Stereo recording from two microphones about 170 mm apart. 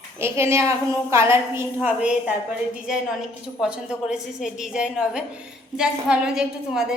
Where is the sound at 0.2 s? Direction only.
15° right (ahead or behind).